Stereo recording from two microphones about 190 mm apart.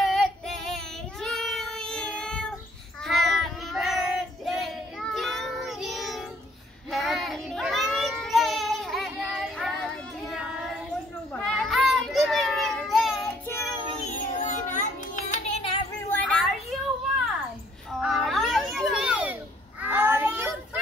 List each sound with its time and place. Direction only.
0.0 s child singing: centre (ahead or behind)
11.4 s children playing: centre (ahead or behind)
13.5 s child singing: 15° left (ahead or behind)
14.0 s children playing: 40° left (ahead or behind)
16.1 s a sound: 5° left (ahead or behind)
17.9 s a sound: centre (ahead or behind)
19.8 s child singing: 10° right (ahead or behind)